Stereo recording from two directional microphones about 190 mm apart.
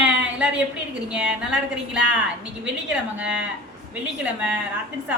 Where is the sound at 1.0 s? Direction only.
5° right (ahead or behind).